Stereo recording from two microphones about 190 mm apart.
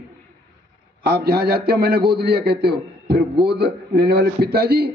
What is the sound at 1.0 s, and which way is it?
A man's voice, 55° right (ahead or behind).